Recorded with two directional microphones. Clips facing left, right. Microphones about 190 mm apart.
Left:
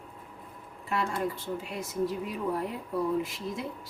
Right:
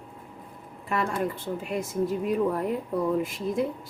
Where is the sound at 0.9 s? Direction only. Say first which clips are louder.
Right 3 dB; 55° right (ahead or behind).